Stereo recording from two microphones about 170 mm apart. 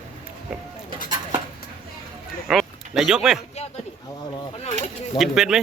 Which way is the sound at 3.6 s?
40° left (ahead or behind).